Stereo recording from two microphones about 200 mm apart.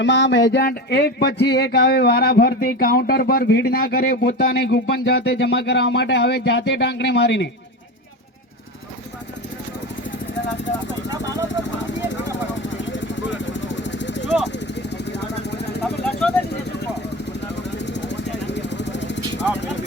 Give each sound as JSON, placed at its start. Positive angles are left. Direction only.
{"t": 0.0, "sound": "a sound", "side_deg": 60}
{"t": 12.0, "sound": "vehicle", "side_deg": 65}
{"t": 15.4, "sound": "vehicle", "side_deg": 55}
{"t": 17.6, "sound": "vehicle", "side_deg": 60}